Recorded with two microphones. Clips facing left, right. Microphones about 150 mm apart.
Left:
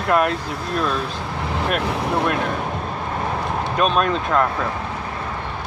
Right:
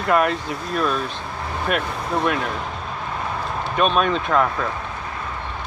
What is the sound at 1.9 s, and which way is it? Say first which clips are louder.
Speech: left 3 dB; 75° left (ahead or behind).